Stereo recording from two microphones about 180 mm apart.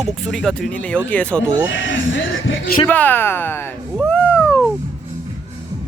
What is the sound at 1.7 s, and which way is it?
Speech, 90° left.